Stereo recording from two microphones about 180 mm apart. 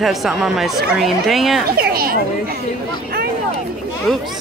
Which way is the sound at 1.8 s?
55° right (ahead or behind).